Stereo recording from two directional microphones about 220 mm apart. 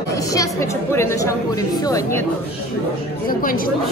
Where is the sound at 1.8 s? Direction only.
15° left (ahead or behind).